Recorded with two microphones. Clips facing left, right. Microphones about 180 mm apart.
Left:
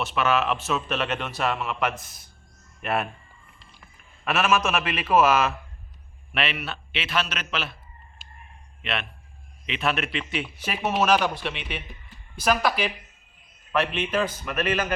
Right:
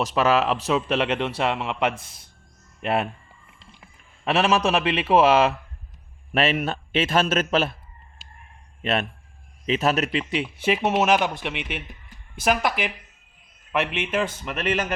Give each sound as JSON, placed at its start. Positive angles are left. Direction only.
{"t": 0.0, "sound": "a man's voice", "side_deg": -35}
{"t": 6.3, "sound": "a man's voice", "side_deg": -45}
{"t": 8.8, "sound": "a man's voice", "side_deg": -45}